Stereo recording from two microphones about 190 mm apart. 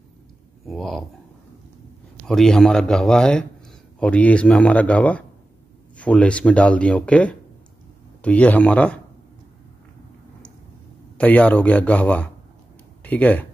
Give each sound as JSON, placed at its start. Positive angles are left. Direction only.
{"t": 0.7, "sound": "speech", "side_deg": 0}
{"t": 2.2, "sound": "a man's voice", "side_deg": 5}
{"t": 11.1, "sound": "speech", "side_deg": 5}